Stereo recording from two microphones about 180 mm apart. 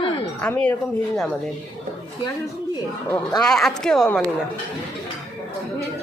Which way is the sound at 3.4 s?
Centre (ahead or behind).